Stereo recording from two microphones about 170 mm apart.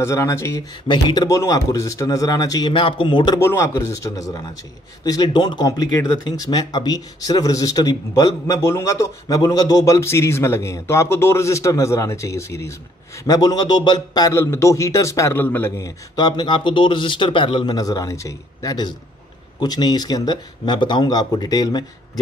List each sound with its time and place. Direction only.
0.0 s speech: 20° left (ahead or behind)
3.3 s speech: 15° left (ahead or behind)